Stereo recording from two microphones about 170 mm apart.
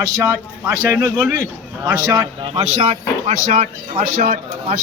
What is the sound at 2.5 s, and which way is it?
Speech, 35° right (ahead or behind).